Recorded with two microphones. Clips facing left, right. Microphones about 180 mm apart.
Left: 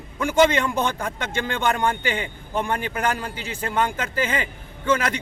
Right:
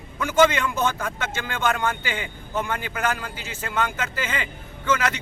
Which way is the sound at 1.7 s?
30° left (ahead or behind).